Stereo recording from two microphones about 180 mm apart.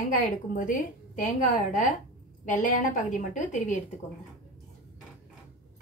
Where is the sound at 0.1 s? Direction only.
45° left (ahead or behind).